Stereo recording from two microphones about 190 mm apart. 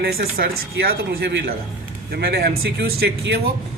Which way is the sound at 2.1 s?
55° right (ahead or behind).